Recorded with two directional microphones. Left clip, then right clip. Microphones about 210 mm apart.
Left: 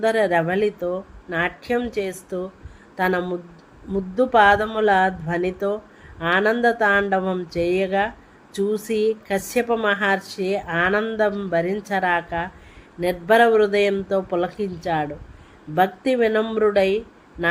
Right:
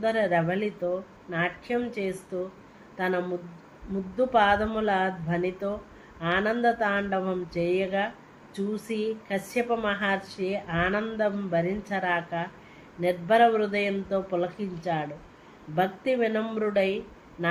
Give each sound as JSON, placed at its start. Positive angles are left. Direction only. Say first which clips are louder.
{"t": 0.0, "sound": "speech", "louder": "left 6 dB", "side_deg": 60}